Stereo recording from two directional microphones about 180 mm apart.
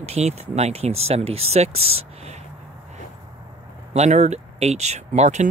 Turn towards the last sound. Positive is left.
turn(degrees=-40)  # may be behind; listen again after turning